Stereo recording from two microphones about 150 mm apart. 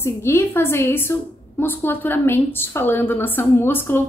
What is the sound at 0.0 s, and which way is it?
A woman's voice, 15° left (ahead or behind).